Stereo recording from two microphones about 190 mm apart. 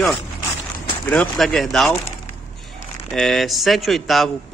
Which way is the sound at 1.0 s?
5° left (ahead or behind).